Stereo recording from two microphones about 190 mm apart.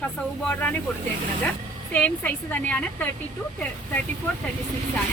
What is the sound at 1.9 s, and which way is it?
A woman's voice, 10° left (ahead or behind).